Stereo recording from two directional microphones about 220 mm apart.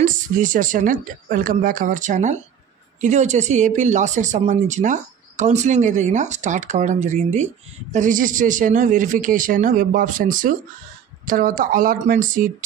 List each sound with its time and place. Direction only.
0.0 s speech: 35° right (ahead or behind)